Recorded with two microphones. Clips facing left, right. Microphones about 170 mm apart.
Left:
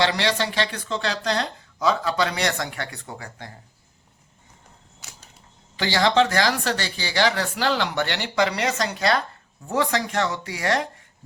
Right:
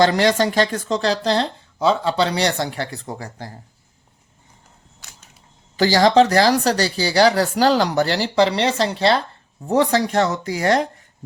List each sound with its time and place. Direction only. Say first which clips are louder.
0.0 s speech: right 7 dB; 45° right (ahead or behind)
5.7 s speech: right 6 dB; 40° right (ahead or behind)